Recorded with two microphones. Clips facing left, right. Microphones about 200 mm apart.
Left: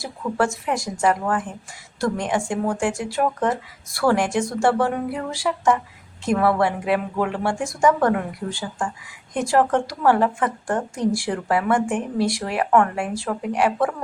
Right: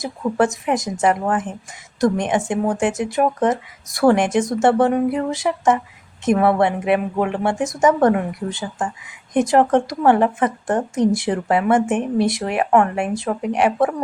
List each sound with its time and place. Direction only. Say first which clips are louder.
0.0 s a woman's voice: right 4 dB; 20° right (ahead or behind)